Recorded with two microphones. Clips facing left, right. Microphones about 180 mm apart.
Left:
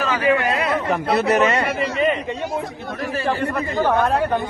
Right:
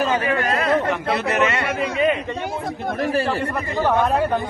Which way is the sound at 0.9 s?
40° left (ahead or behind).